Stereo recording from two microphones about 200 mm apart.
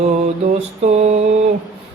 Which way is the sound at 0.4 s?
35° right (ahead or behind).